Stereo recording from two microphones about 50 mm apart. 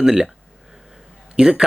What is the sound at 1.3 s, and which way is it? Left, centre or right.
Speech, centre.